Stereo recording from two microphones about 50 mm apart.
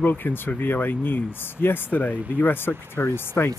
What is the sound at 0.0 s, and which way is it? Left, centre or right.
Speech, left.